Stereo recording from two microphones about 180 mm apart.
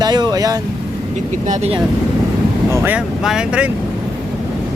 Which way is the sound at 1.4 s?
40° right (ahead or behind).